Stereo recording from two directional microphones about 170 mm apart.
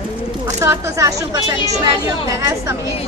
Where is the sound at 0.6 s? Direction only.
20° right (ahead or behind).